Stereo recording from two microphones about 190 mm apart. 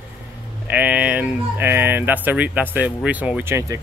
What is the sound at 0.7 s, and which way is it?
Speech, 10° right (ahead or behind).